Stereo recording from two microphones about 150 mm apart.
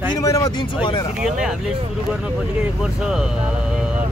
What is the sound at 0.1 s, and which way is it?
Speech, 25° left (ahead or behind).